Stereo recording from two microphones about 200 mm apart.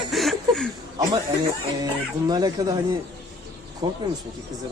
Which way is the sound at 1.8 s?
20° right (ahead or behind).